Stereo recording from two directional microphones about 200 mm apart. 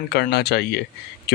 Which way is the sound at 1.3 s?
55° left (ahead or behind).